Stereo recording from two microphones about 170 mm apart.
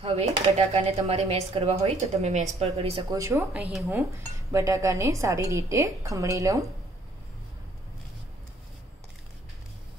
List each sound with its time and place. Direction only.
0.0 s speech: 40° right (ahead or behind)
3.1 s a woman's voice: 15° right (ahead or behind)